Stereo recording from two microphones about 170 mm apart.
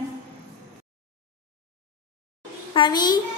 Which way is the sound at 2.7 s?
25° left (ahead or behind).